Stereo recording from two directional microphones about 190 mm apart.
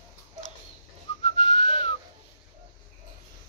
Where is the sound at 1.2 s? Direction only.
30° left (ahead or behind).